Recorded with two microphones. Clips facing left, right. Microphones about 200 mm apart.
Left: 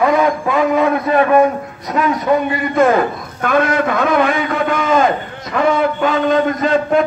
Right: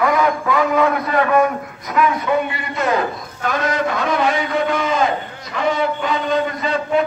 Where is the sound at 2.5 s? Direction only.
50° left (ahead or behind).